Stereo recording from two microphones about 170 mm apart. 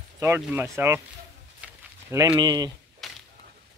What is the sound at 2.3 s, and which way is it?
Speech, 25° right (ahead or behind).